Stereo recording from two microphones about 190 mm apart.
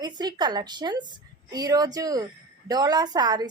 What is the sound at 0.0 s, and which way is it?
A woman's voice, 20° right (ahead or behind).